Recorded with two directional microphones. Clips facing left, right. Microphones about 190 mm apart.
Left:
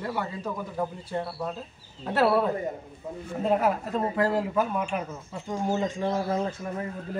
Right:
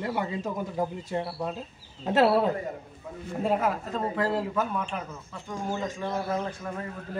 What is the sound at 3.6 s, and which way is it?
A man's voice, 5° left (ahead or behind).